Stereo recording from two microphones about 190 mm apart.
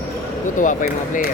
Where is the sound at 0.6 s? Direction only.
40° left (ahead or behind).